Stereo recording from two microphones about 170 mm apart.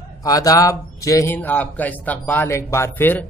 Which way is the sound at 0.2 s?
20° left (ahead or behind).